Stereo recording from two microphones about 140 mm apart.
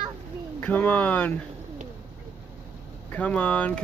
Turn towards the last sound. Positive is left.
turn(degrees=10)  # may be behind; listen again after turning